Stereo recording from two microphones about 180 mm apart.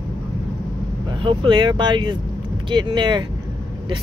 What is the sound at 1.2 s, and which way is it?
Speech, 30° right (ahead or behind).